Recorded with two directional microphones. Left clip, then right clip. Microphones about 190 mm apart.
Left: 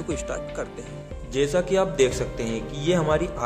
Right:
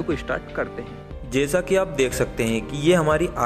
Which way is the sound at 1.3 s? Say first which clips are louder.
Right 2 dB; 20° right (ahead or behind).